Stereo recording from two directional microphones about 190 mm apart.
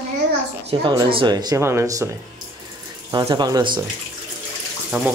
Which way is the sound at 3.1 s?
20° right (ahead or behind).